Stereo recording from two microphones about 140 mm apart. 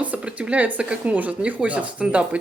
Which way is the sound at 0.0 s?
10° right (ahead or behind).